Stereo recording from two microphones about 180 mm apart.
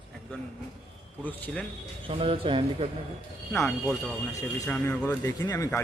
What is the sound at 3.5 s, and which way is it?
Speech, 5° left (ahead or behind).